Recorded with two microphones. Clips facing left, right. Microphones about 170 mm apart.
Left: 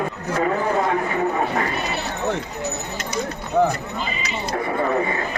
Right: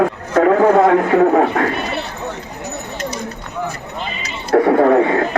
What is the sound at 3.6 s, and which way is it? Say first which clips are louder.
Clip-clop: left 7 dB; 60° left (ahead or behind).